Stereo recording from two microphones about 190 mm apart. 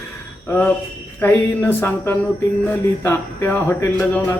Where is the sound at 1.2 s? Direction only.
10° left (ahead or behind).